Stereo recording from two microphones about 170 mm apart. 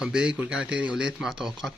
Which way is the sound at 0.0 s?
5° right (ahead or behind).